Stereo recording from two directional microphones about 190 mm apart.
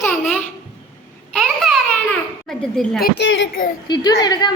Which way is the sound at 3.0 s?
70° left (ahead or behind).